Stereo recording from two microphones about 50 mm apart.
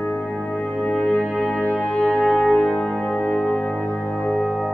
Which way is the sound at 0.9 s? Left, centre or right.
Left.